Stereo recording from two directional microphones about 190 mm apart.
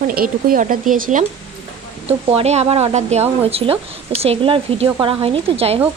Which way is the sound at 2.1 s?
35° right (ahead or behind).